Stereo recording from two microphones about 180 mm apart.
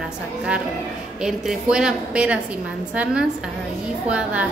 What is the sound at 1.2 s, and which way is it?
A woman's voice, 5° right (ahead or behind).